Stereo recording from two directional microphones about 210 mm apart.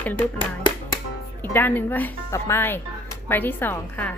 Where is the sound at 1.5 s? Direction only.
10° left (ahead or behind).